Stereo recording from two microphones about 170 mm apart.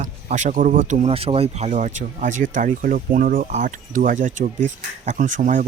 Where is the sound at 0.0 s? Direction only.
45° right (ahead or behind).